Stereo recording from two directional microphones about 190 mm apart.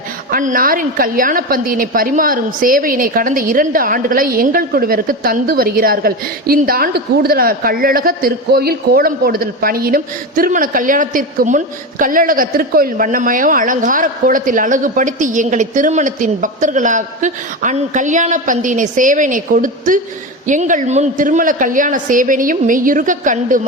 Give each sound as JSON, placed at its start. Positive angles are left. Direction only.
{"t": 0.3, "sound": "a woman's voice", "side_deg": -45}